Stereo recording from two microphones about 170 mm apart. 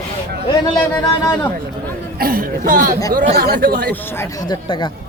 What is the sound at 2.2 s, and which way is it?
Speech, 60° right (ahead or behind).